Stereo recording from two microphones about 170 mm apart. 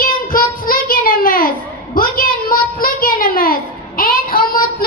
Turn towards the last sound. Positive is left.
turn(degrees=60)  # may be behind; listen again after turning